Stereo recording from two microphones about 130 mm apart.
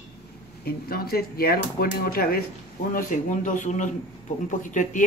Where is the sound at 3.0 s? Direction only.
85° left.